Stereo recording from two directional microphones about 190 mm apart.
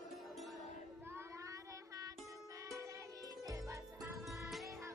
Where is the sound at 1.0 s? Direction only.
15° right (ahead or behind).